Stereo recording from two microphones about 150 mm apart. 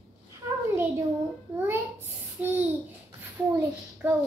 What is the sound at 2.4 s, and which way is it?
Babbling, 10° right (ahead or behind).